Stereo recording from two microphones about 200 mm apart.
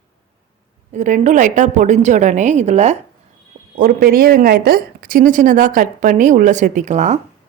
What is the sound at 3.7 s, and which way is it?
A woman's voice, 45° right (ahead or behind).